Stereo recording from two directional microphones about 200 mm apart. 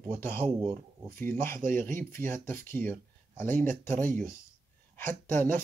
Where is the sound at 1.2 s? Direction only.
10° left (ahead or behind).